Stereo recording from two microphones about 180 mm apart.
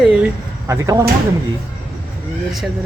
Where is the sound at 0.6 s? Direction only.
20° right (ahead or behind).